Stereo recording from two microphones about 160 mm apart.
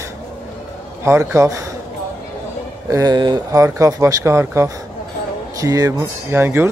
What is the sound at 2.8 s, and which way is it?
Speech, 20° right (ahead or behind).